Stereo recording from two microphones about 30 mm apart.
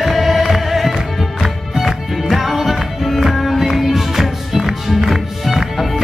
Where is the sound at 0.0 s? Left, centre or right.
Centre.